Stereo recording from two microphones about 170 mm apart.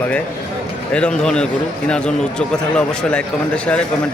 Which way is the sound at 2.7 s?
5° left (ahead or behind).